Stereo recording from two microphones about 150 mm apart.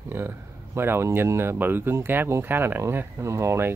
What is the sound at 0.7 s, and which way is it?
Speech, 15° right (ahead or behind).